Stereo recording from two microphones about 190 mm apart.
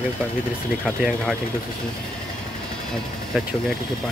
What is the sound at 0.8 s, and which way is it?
Speech, 5° right (ahead or behind).